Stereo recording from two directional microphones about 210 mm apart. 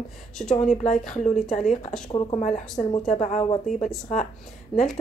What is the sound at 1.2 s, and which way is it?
A woman's voice, 35° left (ahead or behind).